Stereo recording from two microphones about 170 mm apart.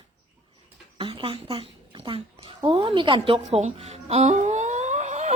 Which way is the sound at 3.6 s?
45° right (ahead or behind).